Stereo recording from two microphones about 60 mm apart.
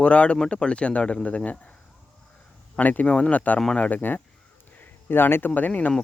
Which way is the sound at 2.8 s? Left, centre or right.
Left.